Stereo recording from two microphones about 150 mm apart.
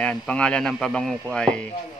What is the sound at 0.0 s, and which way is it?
A man's voice, 5° left (ahead or behind).